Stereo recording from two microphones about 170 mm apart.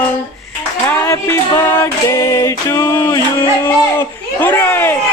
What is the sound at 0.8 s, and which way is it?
Music, 15° left (ahead or behind).